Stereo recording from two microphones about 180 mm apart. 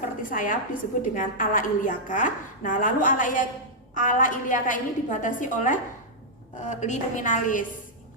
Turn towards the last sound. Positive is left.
turn(degrees=45)  # may be behind; listen again after turning